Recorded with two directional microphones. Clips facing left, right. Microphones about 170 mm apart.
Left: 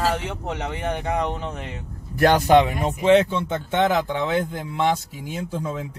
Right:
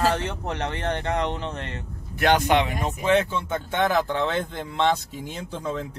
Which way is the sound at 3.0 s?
20° left (ahead or behind).